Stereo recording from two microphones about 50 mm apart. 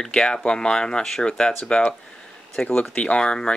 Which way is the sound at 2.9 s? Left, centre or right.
Left.